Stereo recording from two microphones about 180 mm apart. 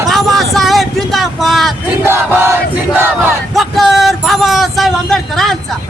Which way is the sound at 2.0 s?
15° right (ahead or behind).